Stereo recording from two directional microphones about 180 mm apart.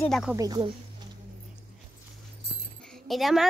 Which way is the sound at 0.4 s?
25° right (ahead or behind).